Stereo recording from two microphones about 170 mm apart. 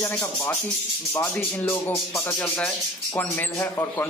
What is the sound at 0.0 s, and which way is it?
Speech, 10° left (ahead or behind).